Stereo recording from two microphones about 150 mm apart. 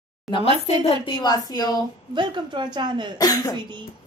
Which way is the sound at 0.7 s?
45° left (ahead or behind).